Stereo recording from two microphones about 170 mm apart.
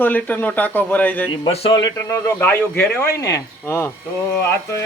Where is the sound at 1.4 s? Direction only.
30° left (ahead or behind).